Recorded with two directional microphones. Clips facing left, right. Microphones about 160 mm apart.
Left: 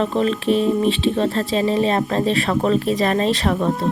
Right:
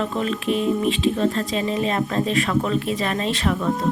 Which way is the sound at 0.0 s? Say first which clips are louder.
Left 4 dB; 35° left (ahead or behind).